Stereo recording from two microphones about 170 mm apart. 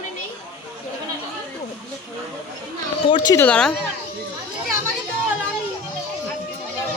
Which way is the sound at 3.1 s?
20° left (ahead or behind).